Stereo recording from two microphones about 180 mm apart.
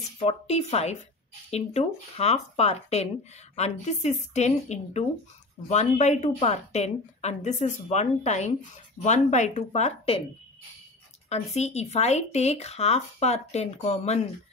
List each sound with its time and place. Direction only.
0.2 s a woman's voice: 35° left (ahead or behind)
11.5 s a woman's voice: 35° left (ahead or behind)